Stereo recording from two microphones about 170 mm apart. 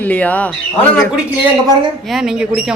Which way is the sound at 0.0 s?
10° left (ahead or behind).